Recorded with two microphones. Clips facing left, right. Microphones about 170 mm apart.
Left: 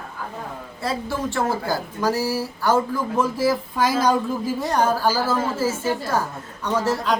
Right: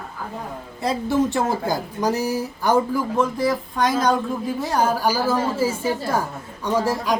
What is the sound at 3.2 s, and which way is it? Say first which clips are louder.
A woman's voice: left 2 dB; 5° left (ahead or behind).